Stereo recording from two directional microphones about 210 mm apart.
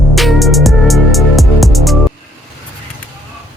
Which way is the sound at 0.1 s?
Centre (ahead or behind).